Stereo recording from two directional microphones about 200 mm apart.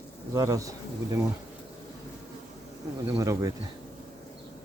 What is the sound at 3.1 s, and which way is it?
Speech, 15° right (ahead or behind).